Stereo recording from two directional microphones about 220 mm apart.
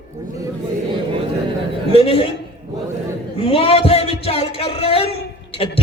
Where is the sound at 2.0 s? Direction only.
25° left (ahead or behind).